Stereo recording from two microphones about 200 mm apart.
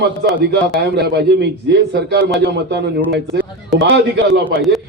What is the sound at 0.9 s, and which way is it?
A man's voice, 55° right (ahead or behind).